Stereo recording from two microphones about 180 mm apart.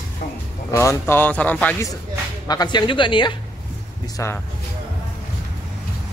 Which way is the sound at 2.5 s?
20° left (ahead or behind).